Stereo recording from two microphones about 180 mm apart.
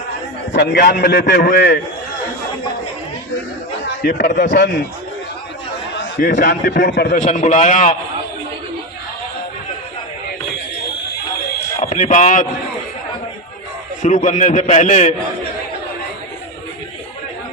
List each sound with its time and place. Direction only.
0.5 s a man's voice: 65° left (ahead or behind)
4.0 s a man's voice: 50° left (ahead or behind)
6.1 s a man's voice: 50° left (ahead or behind)
7.2 s a man's voice: 45° left (ahead or behind)
11.8 s a man's voice: 45° left (ahead or behind)
14.0 s a man's voice: 45° left (ahead or behind)